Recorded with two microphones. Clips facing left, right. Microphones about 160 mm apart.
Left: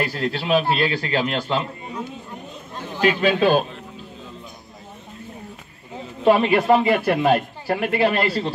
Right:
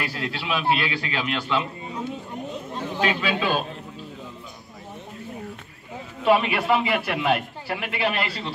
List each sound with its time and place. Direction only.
0.0 s speech: 40° left (ahead or behind)
3.2 s a man's voice: 45° left (ahead or behind)
6.2 s speech: 40° left (ahead or behind)